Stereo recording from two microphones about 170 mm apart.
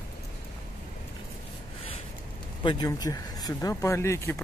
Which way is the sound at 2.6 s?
25° left (ahead or behind).